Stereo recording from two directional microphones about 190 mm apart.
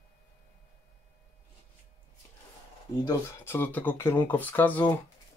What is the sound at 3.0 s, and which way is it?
Speech, 10° left (ahead or behind).